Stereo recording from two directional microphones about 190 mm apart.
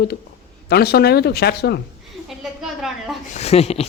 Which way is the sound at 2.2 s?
Centre (ahead or behind).